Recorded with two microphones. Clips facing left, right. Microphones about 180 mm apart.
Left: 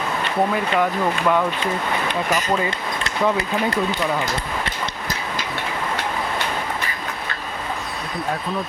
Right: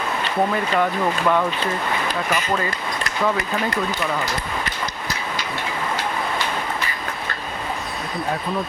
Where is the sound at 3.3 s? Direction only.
30° left (ahead or behind).